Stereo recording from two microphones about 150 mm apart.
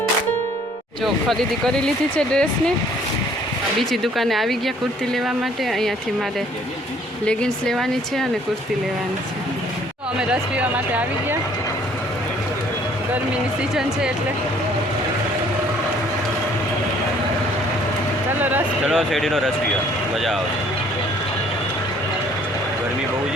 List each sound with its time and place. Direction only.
1.0 s speech: centre (ahead or behind)
3.8 s speech: centre (ahead or behind)
7.3 s speech: 5° left (ahead or behind)
10.2 s speech: 5° right (ahead or behind)
18.3 s a sound: 10° right (ahead or behind)
18.9 s speech: centre (ahead or behind)